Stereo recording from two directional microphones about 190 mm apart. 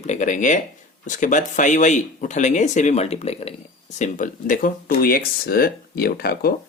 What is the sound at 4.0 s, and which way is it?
Speech, 45° left (ahead or behind).